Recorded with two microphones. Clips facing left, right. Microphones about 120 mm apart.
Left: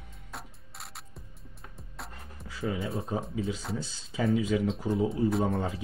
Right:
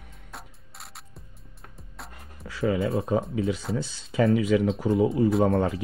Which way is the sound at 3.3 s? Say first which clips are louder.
Right 6 dB; 70° right (ahead or behind).